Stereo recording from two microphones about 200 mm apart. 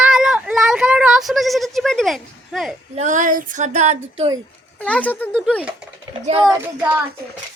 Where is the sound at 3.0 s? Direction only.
40° right (ahead or behind).